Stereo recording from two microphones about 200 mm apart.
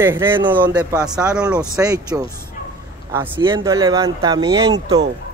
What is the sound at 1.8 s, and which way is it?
Speech, 20° right (ahead or behind).